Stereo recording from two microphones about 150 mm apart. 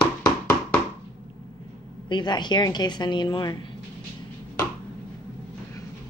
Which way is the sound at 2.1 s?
30° left (ahead or behind).